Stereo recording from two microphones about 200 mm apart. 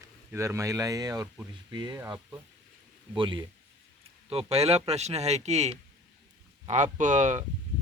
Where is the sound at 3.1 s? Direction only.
25° right (ahead or behind).